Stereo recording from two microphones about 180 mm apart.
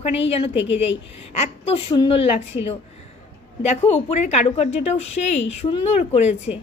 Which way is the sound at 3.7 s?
35° left (ahead or behind).